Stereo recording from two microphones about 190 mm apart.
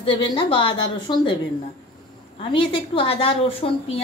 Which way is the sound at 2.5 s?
25° left (ahead or behind).